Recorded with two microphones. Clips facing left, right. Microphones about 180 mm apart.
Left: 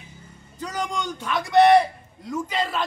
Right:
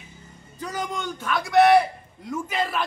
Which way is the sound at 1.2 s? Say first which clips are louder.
Right 2 dB; 20° left (ahead or behind).